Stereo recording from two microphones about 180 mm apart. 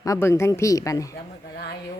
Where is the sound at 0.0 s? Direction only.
15° left (ahead or behind).